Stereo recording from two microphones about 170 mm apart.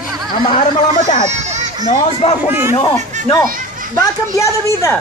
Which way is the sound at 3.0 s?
45° right (ahead or behind).